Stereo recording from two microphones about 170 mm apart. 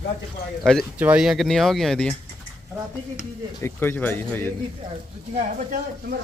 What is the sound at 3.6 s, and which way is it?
Speech, 15° left (ahead or behind).